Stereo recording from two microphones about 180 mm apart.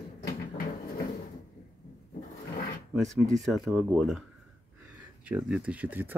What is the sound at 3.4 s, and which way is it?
Speech, centre (ahead or behind).